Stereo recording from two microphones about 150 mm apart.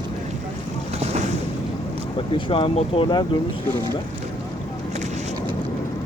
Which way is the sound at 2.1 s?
35° left (ahead or behind).